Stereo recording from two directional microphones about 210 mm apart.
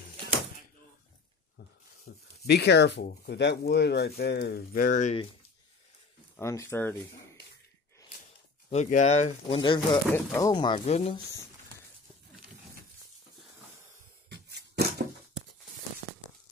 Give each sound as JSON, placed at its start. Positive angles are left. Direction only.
{"t": 2.0, "sound": "speech", "side_deg": 50}
{"t": 6.3, "sound": "speech", "side_deg": 15}
{"t": 8.6, "sound": "speech", "side_deg": 30}
{"t": 14.3, "sound": "a sound", "side_deg": -50}